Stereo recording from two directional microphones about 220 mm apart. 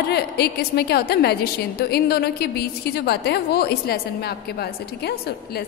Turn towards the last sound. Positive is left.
turn(degrees=45)  # may be behind; listen again after turning